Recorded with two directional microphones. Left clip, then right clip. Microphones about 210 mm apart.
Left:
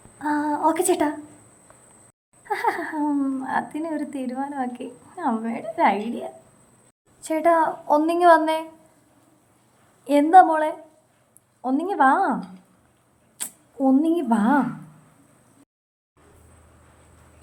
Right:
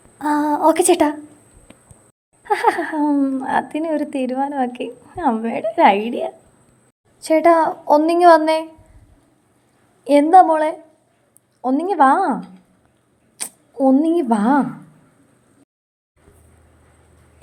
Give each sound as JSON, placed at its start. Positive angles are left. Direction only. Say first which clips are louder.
{"t": 0.2, "sound": "a sound", "louder": "right 5 dB", "side_deg": -30}
{"t": 2.4, "sound": "a woman's voice", "louder": "right 7 dB", "side_deg": -35}
{"t": 10.0, "sound": "speech", "louder": "right 3 dB", "side_deg": -20}
{"t": 13.4, "sound": "speech", "louder": "right 6 dB", "side_deg": -15}